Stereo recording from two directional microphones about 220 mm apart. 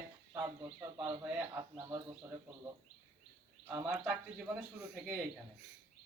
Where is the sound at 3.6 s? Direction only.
10° right (ahead or behind).